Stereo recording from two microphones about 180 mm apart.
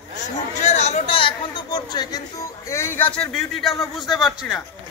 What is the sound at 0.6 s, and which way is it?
A man's voice, 40° left (ahead or behind).